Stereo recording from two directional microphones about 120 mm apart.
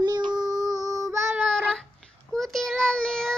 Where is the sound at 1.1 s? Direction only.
15° right (ahead or behind).